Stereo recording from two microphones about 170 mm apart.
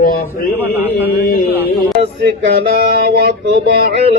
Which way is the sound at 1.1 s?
60° left (ahead or behind).